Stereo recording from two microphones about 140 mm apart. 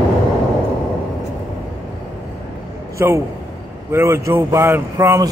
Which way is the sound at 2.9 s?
20° right (ahead or behind).